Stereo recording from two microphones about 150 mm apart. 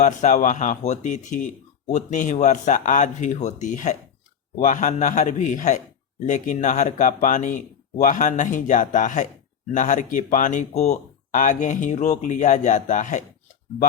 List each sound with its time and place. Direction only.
0.0 s speech: 55° left (ahead or behind)